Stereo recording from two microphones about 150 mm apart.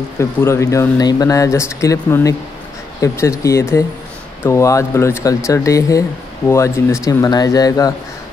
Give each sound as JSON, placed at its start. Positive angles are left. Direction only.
{"t": 0.2, "sound": "speech", "side_deg": 15}